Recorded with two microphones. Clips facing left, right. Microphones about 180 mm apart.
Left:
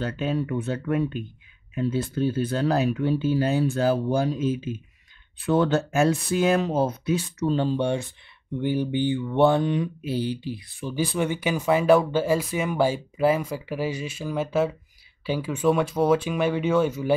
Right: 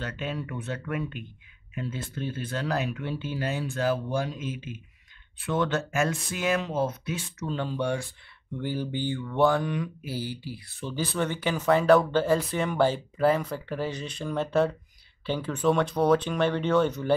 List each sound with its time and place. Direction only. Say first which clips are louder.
0.0 s speech: left 7 dB; 35° left (ahead or behind); by 17.1 s 10° left (ahead or behind)